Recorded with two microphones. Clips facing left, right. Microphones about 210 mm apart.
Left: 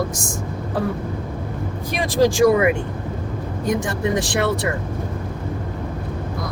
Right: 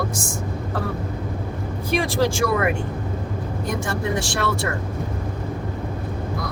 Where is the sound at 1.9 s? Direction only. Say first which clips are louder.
Left 3 dB; 15° left (ahead or behind).